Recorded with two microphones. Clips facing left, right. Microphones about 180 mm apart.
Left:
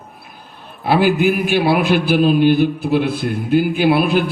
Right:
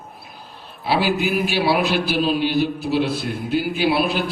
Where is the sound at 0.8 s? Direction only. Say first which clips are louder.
Left 6 dB; 50° left (ahead or behind).